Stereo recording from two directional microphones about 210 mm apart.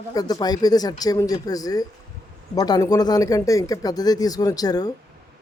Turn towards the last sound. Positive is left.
turn(degrees=20)  # may be behind; listen again after turning